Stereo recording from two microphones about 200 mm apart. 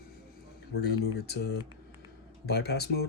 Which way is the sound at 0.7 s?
55° left (ahead or behind).